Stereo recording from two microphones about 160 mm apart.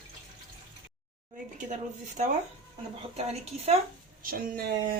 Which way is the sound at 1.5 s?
50° right (ahead or behind).